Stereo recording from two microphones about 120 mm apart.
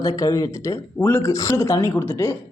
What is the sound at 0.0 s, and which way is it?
A woman's voice, 30° left (ahead or behind).